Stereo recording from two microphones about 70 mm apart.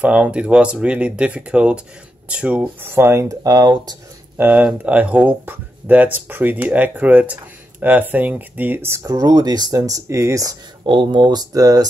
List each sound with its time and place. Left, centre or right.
0.0 s speech: centre
2.8 s speech: right
4.7 s speech: right
9.0 s speech: right
11.0 s mantra: right